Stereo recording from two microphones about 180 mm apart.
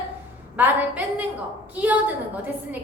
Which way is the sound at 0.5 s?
10° right (ahead or behind).